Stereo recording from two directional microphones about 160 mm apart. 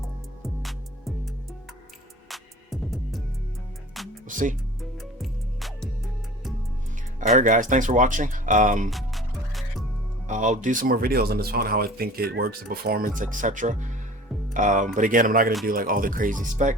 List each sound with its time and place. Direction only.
0.4 s music: centre (ahead or behind)
2.3 s music: centre (ahead or behind)
4.3 s speech: 55° right (ahead or behind)
4.8 s music: centre (ahead or behind)
7.2 s speech: 50° right (ahead or behind)
8.9 s music: centre (ahead or behind)
10.2 s speech: 50° right (ahead or behind)